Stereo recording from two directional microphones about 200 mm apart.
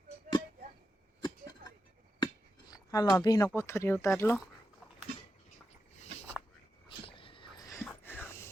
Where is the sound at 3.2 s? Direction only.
20° left (ahead or behind).